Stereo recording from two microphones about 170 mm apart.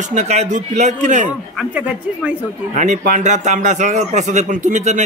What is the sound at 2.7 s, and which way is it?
A man's voice, 45° right (ahead or behind).